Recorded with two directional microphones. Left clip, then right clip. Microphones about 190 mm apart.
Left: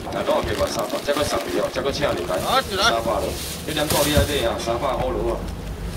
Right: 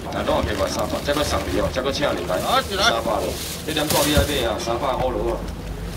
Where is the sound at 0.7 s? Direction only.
15° right (ahead or behind).